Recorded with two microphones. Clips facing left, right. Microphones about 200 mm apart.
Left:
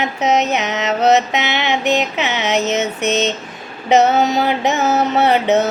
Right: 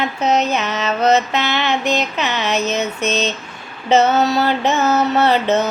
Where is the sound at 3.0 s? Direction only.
20° left (ahead or behind).